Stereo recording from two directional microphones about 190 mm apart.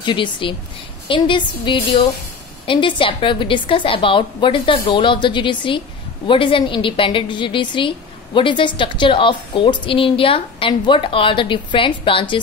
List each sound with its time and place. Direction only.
0.0 s a woman's voice: 25° left (ahead or behind)